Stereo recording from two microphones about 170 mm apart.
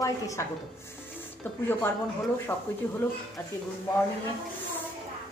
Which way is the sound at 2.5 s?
10° left (ahead or behind).